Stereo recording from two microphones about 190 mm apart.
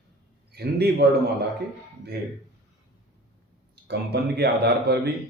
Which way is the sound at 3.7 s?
60° right (ahead or behind).